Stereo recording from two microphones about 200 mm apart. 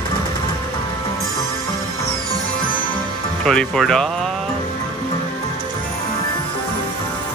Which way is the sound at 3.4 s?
5° left (ahead or behind).